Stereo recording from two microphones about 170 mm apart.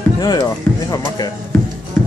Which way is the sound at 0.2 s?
25° left (ahead or behind).